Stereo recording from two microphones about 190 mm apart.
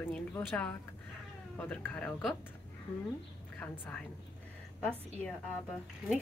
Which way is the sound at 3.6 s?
10° left (ahead or behind).